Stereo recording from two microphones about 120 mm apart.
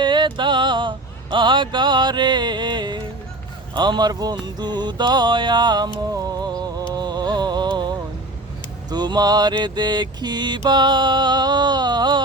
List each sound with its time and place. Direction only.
0.0 s a sound: 40° right (ahead or behind)
3.8 s mantra: 35° right (ahead or behind)
4.4 s music: 35° right (ahead or behind)
8.9 s mantra: 35° right (ahead or behind)